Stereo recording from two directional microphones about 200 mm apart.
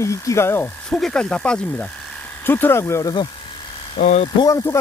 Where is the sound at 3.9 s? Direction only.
35° left (ahead or behind).